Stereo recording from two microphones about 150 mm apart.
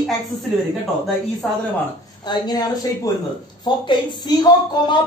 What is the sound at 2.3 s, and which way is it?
A man's voice, 25° left (ahead or behind).